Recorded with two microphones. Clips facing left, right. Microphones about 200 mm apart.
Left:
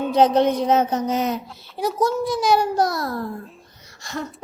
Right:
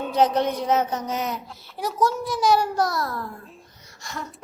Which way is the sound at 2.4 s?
20° left (ahead or behind).